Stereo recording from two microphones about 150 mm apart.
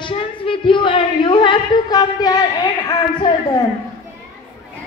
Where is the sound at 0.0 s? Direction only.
35° left (ahead or behind).